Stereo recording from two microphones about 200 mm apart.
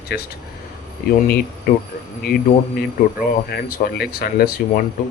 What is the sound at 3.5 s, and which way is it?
Speech, 50° left (ahead or behind).